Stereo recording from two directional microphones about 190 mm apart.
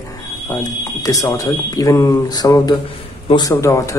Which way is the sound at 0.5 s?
15° left (ahead or behind).